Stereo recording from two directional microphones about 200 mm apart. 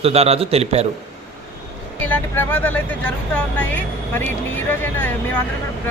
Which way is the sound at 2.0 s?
10° left (ahead or behind).